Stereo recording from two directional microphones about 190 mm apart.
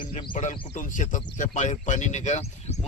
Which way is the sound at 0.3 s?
40° left (ahead or behind).